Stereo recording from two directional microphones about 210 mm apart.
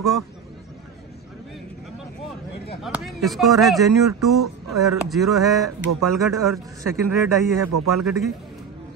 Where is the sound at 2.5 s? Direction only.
50° left (ahead or behind).